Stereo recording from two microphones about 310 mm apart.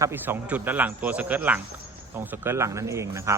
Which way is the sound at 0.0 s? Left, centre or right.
Centre.